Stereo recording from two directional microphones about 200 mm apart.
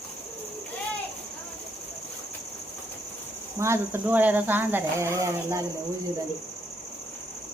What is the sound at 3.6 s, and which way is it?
Speech, 10° right (ahead or behind).